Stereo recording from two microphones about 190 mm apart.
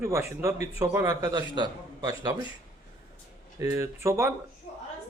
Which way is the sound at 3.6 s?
15° right (ahead or behind).